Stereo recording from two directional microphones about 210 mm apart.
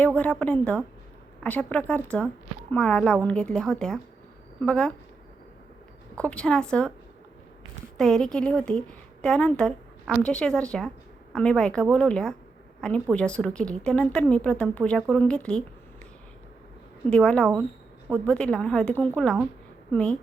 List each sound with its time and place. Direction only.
0.2 s a woman's voice: 5° left (ahead or behind)
6.1 s a woman's voice: 5° left (ahead or behind)
7.9 s a woman's voice: centre (ahead or behind)
17.1 s a woman's voice: 5° left (ahead or behind)